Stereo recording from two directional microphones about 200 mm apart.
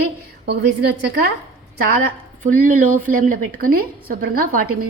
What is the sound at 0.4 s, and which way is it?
Speech, 55° right (ahead or behind).